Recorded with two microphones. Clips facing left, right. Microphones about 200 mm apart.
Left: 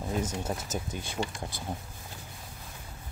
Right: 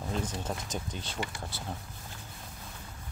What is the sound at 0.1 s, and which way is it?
Speech, 10° left (ahead or behind).